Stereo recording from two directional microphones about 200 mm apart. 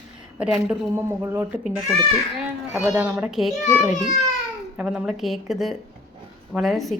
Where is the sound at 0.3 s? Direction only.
5° right (ahead or behind).